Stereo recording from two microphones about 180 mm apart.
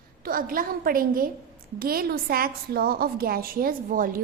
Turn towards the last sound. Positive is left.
turn(degrees=-50)  # may be behind; listen again after turning